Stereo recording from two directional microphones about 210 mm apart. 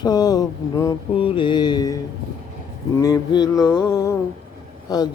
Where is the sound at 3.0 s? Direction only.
15° left (ahead or behind).